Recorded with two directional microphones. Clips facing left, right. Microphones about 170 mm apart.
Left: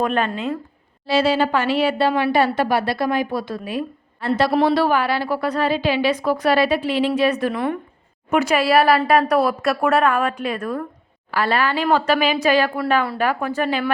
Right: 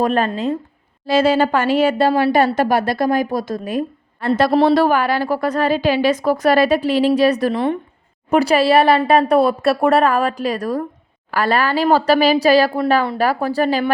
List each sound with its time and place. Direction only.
0.0 s a woman's voice: 35° right (ahead or behind)
1.0 s a woman's voice: 50° right (ahead or behind)